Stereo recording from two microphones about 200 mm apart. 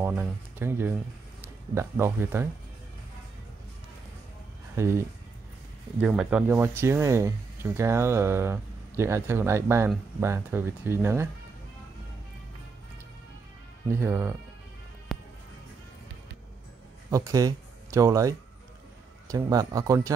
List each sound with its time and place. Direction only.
0.0 s speech: 10° right (ahead or behind)
4.7 s speech: 15° right (ahead or behind)
13.8 s speech: 10° right (ahead or behind)
15.1 s music: centre (ahead or behind)
17.1 s speech: 15° right (ahead or behind)